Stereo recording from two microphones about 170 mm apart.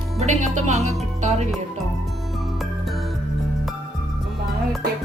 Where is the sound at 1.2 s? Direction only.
45° right (ahead or behind).